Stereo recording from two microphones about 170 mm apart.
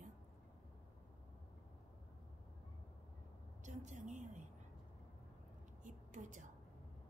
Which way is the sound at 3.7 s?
45° right (ahead or behind).